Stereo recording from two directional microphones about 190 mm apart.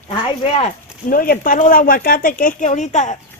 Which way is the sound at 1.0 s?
45° left (ahead or behind).